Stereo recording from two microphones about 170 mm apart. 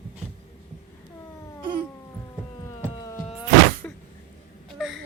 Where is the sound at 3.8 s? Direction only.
10° left (ahead or behind).